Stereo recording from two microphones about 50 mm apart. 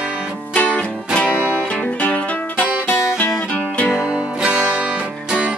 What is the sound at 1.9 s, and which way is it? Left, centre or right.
Music, left.